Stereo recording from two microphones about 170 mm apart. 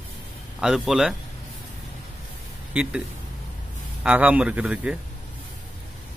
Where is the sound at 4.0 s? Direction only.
5° right (ahead or behind).